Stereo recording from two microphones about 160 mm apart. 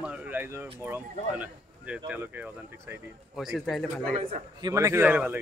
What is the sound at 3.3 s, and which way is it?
Speech, centre (ahead or behind).